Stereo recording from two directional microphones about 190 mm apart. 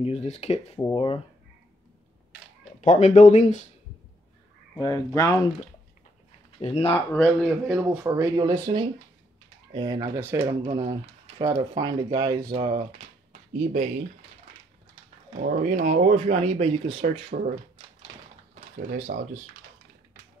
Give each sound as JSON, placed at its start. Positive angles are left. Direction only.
{"t": 0.0, "sound": "speech", "side_deg": 35}
{"t": 2.8, "sound": "speech", "side_deg": 40}
{"t": 4.8, "sound": "speech", "side_deg": 15}
{"t": 6.6, "sound": "speech", "side_deg": 30}
{"t": 7.2, "sound": "speech", "side_deg": 0}
{"t": 7.9, "sound": "speech", "side_deg": -15}
{"t": 13.3, "sound": "a sound", "side_deg": -40}
{"t": 15.3, "sound": "speech", "side_deg": -45}
{"t": 19.1, "sound": "speech", "side_deg": -50}